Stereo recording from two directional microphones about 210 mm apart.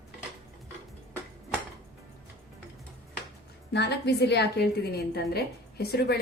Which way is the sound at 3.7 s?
50° left (ahead or behind).